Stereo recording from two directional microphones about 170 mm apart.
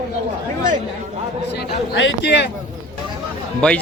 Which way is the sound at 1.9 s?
90° left.